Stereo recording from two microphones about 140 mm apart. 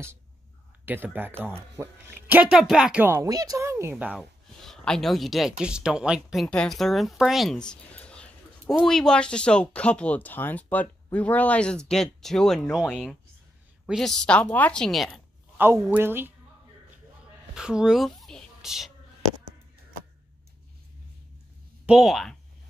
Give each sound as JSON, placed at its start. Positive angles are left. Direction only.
{"t": 0.8, "sound": "speech", "side_deg": -15}
{"t": 3.3, "sound": "a woman's voice", "side_deg": -25}
{"t": 3.9, "sound": "speech", "side_deg": -5}
{"t": 15.5, "sound": "a sound", "side_deg": -15}
{"t": 15.9, "sound": "speech", "side_deg": -15}
{"t": 17.6, "sound": "speech", "side_deg": -5}
{"t": 21.8, "sound": "speech", "side_deg": 0}